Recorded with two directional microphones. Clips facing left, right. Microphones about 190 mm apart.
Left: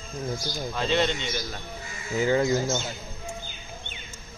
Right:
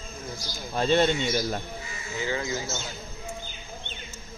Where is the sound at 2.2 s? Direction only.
45° left (ahead or behind).